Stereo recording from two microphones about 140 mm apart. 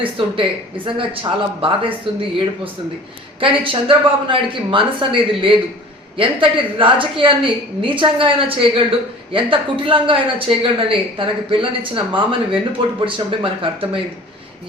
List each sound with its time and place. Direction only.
0.0 s a woman's voice: 40° right (ahead or behind)
3.4 s a woman's voice: 40° right (ahead or behind)